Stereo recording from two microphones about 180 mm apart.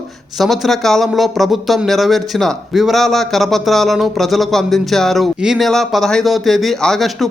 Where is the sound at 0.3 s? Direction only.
Centre (ahead or behind).